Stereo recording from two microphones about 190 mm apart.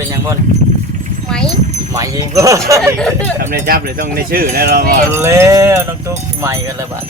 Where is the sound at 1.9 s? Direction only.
15° right (ahead or behind).